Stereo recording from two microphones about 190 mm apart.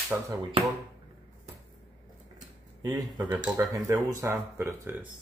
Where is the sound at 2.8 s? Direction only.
20° right (ahead or behind).